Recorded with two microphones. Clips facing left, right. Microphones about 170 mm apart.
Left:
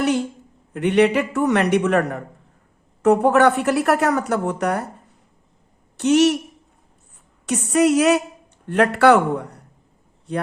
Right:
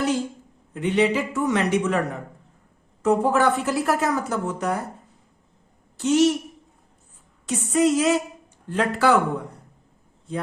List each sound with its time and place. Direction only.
0.7 s a man's voice: 65° left (ahead or behind)
6.0 s speech: 70° left (ahead or behind)
7.4 s a man's voice: 70° left (ahead or behind)